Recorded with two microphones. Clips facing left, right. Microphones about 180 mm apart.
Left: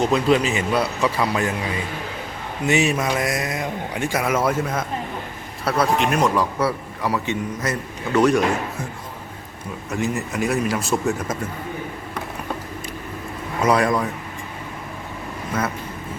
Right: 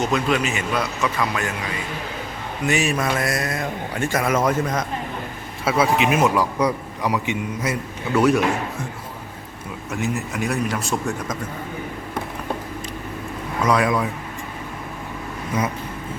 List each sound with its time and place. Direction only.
0.0 s a man's voice: 30° left (ahead or behind)
2.6 s a man's voice: 25° left (ahead or behind); by 8.4 s 5° right (ahead or behind)
9.9 s speech: centre (ahead or behind)
13.7 s speech: centre (ahead or behind)